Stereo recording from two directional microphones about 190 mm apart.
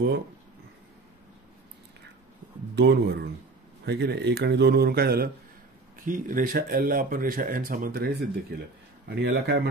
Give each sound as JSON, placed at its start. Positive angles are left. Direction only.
{"t": 2.7, "sound": "speech", "side_deg": -65}